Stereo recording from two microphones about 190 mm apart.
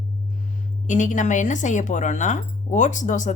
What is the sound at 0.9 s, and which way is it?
A woman's voice, 40° left (ahead or behind).